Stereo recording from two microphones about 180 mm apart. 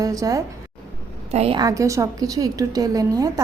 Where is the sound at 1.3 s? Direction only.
35° right (ahead or behind).